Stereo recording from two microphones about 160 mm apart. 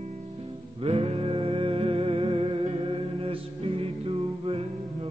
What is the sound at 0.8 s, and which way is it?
Music, 40° right (ahead or behind).